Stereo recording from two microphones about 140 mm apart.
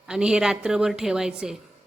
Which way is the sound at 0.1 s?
5° right (ahead or behind).